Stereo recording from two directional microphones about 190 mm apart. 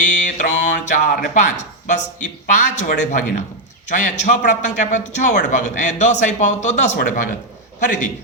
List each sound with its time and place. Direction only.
0.0 s music: 40° left (ahead or behind)
1.9 s a man's voice: 40° left (ahead or behind)